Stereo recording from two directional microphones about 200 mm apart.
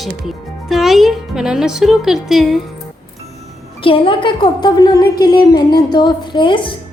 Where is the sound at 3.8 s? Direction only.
25° left (ahead or behind).